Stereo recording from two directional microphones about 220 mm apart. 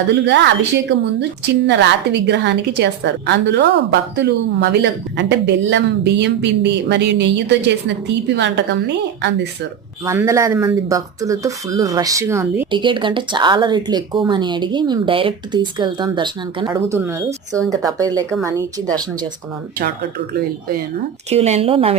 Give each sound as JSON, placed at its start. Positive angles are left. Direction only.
{"t": 0.3, "sound": "speech", "side_deg": -50}
{"t": 10.1, "sound": "speech", "side_deg": -15}
{"t": 19.8, "sound": "speech", "side_deg": -45}
{"t": 21.2, "sound": "speech", "side_deg": -30}